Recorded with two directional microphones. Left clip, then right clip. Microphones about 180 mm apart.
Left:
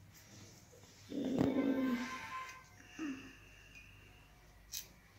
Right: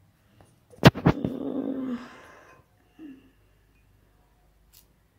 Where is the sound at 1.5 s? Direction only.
40° right (ahead or behind).